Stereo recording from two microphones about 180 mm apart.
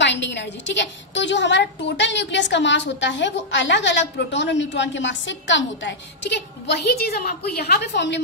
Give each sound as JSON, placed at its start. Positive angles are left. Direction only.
{"t": 0.0, "sound": "a woman's voice", "side_deg": 75}